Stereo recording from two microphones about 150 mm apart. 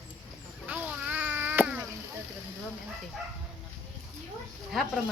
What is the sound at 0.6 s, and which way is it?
Cat, 10° right (ahead or behind).